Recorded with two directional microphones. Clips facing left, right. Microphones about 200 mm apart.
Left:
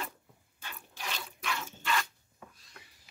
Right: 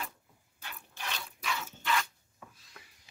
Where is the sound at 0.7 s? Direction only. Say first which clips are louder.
Even; centre (ahead or behind).